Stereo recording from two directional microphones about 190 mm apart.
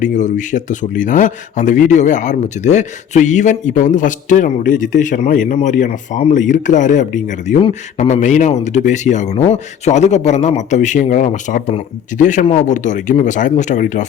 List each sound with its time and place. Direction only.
0.0 s speech: 40° left (ahead or behind)